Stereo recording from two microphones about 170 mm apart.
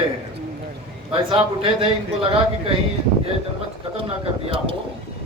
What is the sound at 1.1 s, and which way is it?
A man's voice, 30° right (ahead or behind).